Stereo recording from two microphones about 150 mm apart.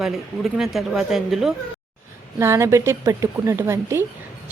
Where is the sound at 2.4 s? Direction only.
20° right (ahead or behind).